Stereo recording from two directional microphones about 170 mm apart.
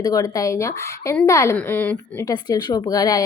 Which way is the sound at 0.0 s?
20° left (ahead or behind).